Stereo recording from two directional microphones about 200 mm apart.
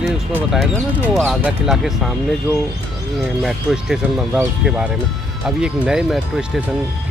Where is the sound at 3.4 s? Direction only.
Centre (ahead or behind).